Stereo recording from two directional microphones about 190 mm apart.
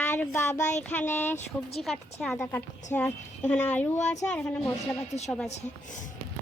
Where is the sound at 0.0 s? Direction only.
10° left (ahead or behind).